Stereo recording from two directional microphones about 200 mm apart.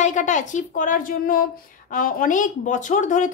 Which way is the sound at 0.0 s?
35° left (ahead or behind).